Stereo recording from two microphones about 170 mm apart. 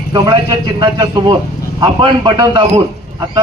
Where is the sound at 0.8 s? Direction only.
25° right (ahead or behind).